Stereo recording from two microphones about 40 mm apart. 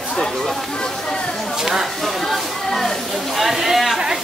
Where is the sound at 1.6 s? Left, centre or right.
Centre.